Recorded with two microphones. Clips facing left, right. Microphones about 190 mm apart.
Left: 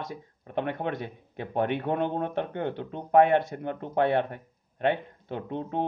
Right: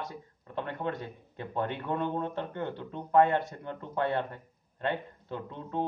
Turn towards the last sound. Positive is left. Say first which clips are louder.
# left 4 dB
turn(degrees=65)  # may be behind; listen again after turning